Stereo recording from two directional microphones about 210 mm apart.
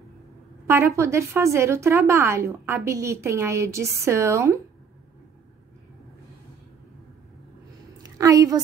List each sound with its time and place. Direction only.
0.7 s a woman's voice: 10° right (ahead or behind)
8.2 s a woman's voice: 15° right (ahead or behind)